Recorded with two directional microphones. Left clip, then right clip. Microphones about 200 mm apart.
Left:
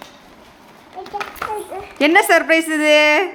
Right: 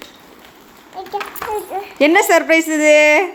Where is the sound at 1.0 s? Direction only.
45° right (ahead or behind).